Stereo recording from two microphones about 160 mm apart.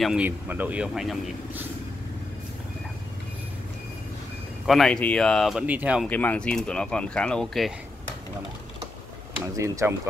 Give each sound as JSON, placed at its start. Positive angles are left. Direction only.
{"t": 0.0, "sound": "speech", "side_deg": -5}
{"t": 4.6, "sound": "speech", "side_deg": 0}
{"t": 6.0, "sound": "speech", "side_deg": 10}
{"t": 9.6, "sound": "speech", "side_deg": -20}